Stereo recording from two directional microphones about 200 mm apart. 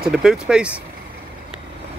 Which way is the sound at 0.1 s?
Centre (ahead or behind).